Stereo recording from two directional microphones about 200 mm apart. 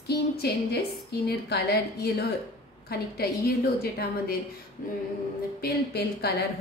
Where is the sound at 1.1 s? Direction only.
55° left (ahead or behind).